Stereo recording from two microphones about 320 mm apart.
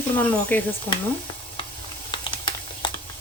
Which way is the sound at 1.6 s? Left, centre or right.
Centre.